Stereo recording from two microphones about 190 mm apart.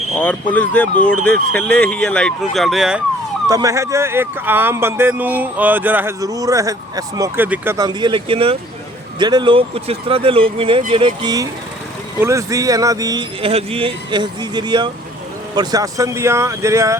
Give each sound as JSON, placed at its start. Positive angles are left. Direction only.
{"t": 0.2, "sound": "speech", "side_deg": 5}
{"t": 3.5, "sound": "speech", "side_deg": -15}